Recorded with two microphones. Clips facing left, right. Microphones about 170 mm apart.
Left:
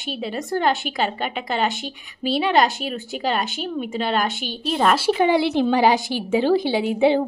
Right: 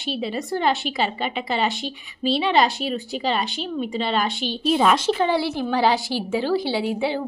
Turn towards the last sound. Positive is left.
turn(degrees=20)  # may be behind; listen again after turning